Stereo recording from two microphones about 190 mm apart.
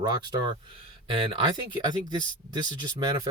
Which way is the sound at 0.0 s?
25° right (ahead or behind).